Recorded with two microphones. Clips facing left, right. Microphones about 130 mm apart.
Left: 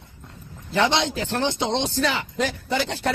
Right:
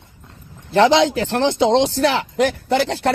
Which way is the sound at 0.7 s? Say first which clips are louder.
Right 8 dB; 85° right.